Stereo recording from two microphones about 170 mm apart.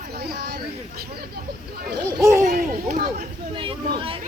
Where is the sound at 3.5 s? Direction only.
30° right (ahead or behind).